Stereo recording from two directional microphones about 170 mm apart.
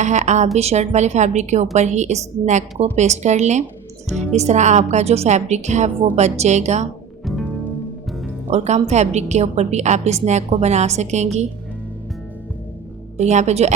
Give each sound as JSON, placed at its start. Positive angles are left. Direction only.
{"t": 0.0, "sound": "a woman's voice", "side_deg": -45}
{"t": 8.4, "sound": "a woman's voice", "side_deg": -40}
{"t": 13.1, "sound": "a woman's voice", "side_deg": -40}